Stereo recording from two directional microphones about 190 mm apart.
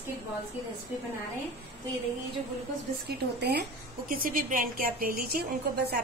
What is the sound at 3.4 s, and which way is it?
A woman's voice, 60° right (ahead or behind).